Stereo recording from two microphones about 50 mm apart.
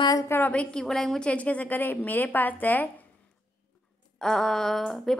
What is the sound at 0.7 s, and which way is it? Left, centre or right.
Speech, centre.